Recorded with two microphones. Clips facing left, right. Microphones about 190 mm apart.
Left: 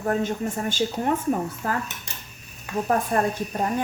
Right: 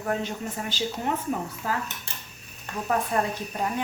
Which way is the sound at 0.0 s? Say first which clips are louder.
Left 5 dB; 45° left (ahead or behind).